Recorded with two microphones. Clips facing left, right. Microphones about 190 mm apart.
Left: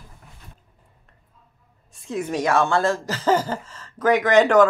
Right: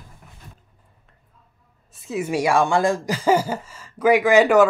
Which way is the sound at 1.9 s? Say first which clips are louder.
Right 2 dB; 5° right (ahead or behind).